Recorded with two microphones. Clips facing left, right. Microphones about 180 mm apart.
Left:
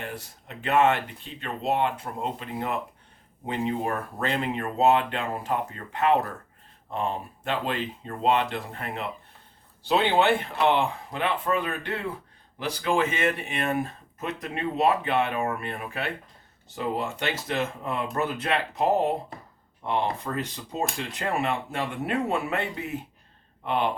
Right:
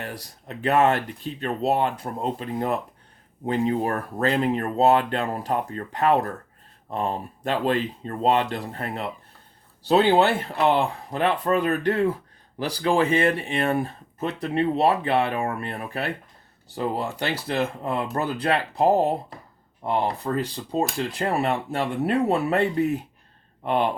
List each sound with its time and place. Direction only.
0.1 s speech: 40° right (ahead or behind)